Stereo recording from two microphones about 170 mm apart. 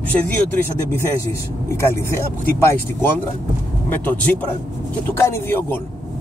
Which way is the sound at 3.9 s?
10° left (ahead or behind).